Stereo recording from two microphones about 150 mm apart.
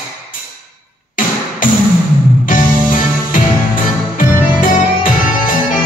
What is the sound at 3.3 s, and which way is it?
Music, 65° left (ahead or behind).